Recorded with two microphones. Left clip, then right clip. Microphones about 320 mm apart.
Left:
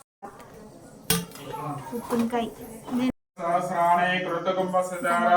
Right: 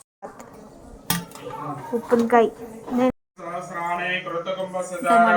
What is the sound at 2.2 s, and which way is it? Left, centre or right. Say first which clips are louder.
Speech: right 11 dB; right.